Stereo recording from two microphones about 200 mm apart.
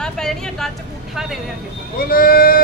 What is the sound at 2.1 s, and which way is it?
Speech, 45° left (ahead or behind).